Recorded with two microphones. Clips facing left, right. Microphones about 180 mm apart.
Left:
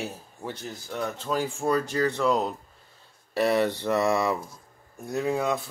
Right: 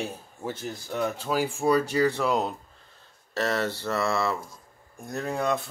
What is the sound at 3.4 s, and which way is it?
A man's voice, 15° left (ahead or behind).